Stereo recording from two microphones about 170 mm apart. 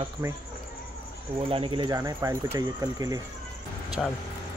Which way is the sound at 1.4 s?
35° right (ahead or behind).